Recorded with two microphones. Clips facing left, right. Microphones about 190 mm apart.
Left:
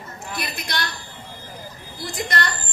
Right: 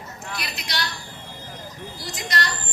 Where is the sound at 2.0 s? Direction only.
55° left (ahead or behind).